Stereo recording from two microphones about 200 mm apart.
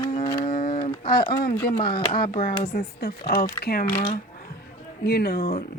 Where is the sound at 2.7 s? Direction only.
50° left (ahead or behind).